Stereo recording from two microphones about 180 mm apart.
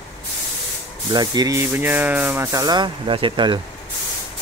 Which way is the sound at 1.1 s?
20° right (ahead or behind).